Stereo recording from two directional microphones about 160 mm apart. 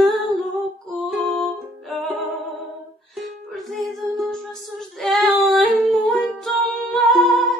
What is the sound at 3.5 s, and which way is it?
Female singing, centre (ahead or behind).